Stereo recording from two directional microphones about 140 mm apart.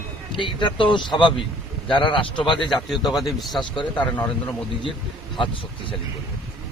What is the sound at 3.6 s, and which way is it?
Speech, 35° left (ahead or behind).